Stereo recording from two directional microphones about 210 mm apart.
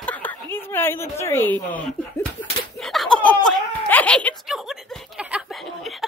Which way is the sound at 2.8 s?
Centre (ahead or behind).